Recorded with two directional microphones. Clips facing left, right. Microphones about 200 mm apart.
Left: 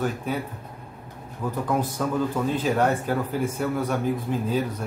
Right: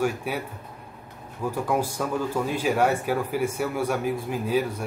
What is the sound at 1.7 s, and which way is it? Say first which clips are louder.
Speech: left 1 dB; 10° right (ahead or behind).